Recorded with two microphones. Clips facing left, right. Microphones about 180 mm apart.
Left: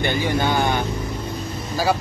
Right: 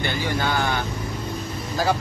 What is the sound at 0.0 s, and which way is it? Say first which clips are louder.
Speech: left 4 dB; 20° left (ahead or behind).